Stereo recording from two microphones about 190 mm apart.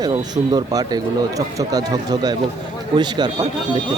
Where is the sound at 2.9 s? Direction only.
25° right (ahead or behind).